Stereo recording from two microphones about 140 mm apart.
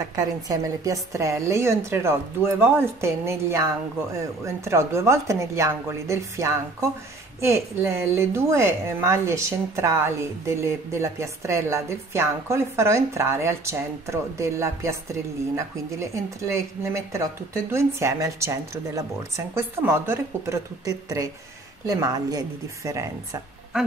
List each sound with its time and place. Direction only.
0.1 s a woman's voice: 25° right (ahead or behind)
4.6 s a woman's voice: 20° right (ahead or behind)